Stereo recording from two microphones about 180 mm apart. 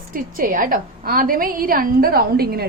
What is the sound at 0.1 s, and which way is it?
A woman's voice, 50° right (ahead or behind).